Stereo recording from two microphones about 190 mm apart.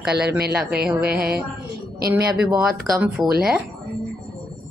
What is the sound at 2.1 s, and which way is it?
Speech, 5° right (ahead or behind).